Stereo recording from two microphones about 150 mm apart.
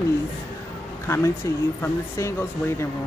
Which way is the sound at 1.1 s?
15° left (ahead or behind).